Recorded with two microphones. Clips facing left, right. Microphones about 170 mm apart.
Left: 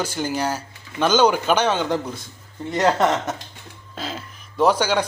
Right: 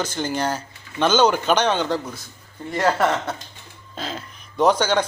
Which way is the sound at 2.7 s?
20° left (ahead or behind).